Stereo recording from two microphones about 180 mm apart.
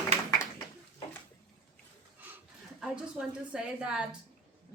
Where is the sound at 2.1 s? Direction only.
10° right (ahead or behind).